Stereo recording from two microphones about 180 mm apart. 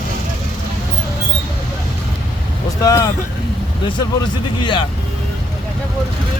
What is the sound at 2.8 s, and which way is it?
Speech, 20° left (ahead or behind).